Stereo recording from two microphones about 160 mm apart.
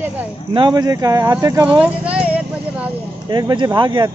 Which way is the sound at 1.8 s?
10° right (ahead or behind).